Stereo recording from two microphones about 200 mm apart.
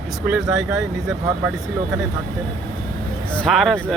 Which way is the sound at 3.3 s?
5° left (ahead or behind).